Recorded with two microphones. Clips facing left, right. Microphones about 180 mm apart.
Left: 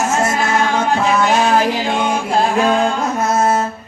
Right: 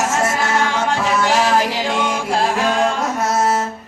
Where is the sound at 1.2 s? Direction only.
80° right.